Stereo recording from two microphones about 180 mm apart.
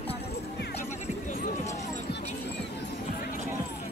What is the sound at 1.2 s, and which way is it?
Run, 40° left (ahead or behind).